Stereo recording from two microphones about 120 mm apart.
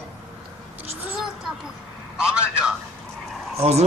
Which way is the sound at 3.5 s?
60° right (ahead or behind).